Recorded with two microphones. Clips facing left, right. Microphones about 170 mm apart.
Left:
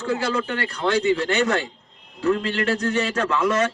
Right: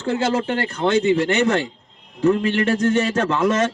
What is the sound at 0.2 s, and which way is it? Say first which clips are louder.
A man's voice: right 4 dB; 25° right (ahead or behind).